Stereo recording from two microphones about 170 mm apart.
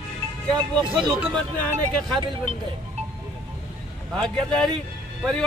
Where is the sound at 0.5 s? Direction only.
25° right (ahead or behind).